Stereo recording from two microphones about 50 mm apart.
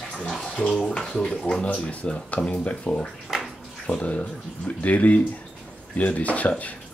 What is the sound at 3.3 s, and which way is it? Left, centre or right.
Bathtub, centre.